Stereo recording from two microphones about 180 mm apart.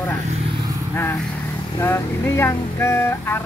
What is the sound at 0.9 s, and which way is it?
Speech, 15° left (ahead or behind).